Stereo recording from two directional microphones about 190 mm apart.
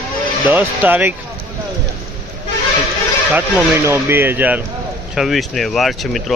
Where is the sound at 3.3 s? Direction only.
15° right (ahead or behind).